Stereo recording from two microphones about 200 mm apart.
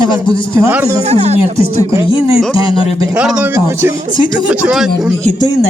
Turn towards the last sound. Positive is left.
turn(degrees=-5)  # may be behind; listen again after turning